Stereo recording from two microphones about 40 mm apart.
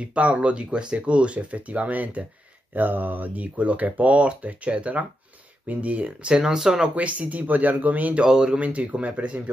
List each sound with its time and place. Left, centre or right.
0.0 s speech: right
2.7 s speech: right
6.2 s speech: centre
7.0 s speech: right
8.2 s speech: right
8.5 s speech: right